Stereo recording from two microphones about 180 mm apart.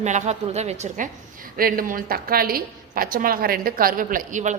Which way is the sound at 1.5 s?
50° right (ahead or behind).